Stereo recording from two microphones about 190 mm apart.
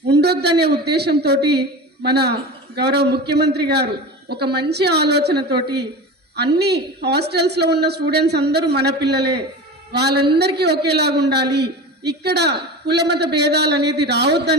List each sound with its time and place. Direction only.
0.1 s a man's voice: 60° right (ahead or behind)